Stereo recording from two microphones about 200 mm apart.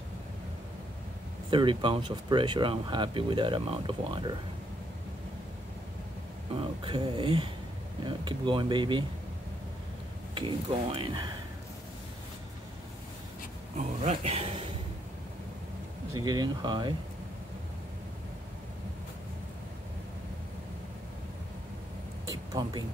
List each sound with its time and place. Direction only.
1.5 s speech: 25° right (ahead or behind)
6.5 s speech: 25° right (ahead or behind)
10.3 s speech: 25° right (ahead or behind)
13.7 s speech: 35° right (ahead or behind)
16.1 s speech: 20° right (ahead or behind)
22.2 s a sound: 20° right (ahead or behind)